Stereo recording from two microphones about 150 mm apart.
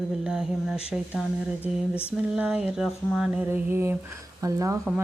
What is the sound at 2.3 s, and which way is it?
Speech, 5° right (ahead or behind).